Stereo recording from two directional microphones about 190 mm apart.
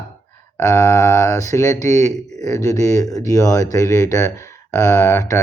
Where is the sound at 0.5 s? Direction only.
15° left (ahead or behind).